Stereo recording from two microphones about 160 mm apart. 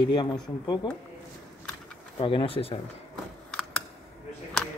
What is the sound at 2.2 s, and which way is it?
Speech, 35° left (ahead or behind).